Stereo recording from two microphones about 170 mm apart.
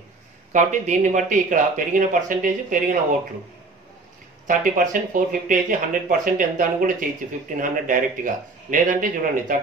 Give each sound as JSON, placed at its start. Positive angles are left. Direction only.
{"t": 0.5, "sound": "speech", "side_deg": -45}
{"t": 4.5, "sound": "speech", "side_deg": -50}